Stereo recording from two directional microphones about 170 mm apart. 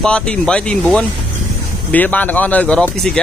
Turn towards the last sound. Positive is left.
turn(degrees=5)  # may be behind; listen again after turning